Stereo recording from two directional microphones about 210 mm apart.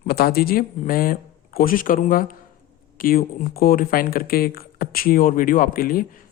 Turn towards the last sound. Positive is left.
turn(degrees=40)  # may be behind; listen again after turning